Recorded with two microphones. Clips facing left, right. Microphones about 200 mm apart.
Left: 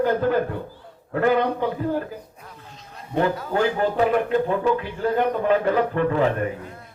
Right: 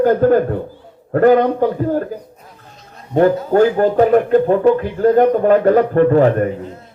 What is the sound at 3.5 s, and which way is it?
Speech, 45° right (ahead or behind).